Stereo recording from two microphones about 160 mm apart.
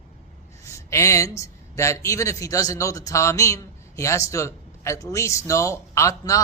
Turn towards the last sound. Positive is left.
turn(degrees=20)  # may be behind; listen again after turning